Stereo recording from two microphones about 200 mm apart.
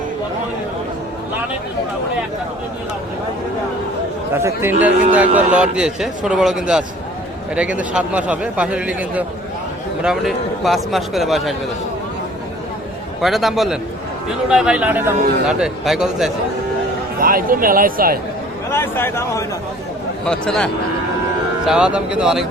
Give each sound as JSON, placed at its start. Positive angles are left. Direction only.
{"t": 4.4, "sound": "a man's voice", "side_deg": -10}
{"t": 13.2, "sound": "a man's voice", "side_deg": 0}
{"t": 17.2, "sound": "speech", "side_deg": -45}
{"t": 18.7, "sound": "a man's voice", "side_deg": 10}
{"t": 21.7, "sound": "a man's voice", "side_deg": -5}